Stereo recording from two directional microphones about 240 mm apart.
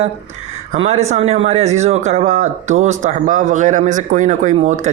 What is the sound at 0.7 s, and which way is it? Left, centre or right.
Speech, right.